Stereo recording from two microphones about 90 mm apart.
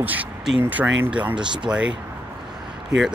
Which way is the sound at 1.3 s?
60° right (ahead or behind).